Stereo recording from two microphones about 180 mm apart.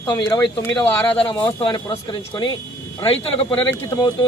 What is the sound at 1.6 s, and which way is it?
A man's voice, 25° left (ahead or behind).